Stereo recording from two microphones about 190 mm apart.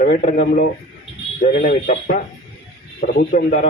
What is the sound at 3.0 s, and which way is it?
Speech, 65° left (ahead or behind).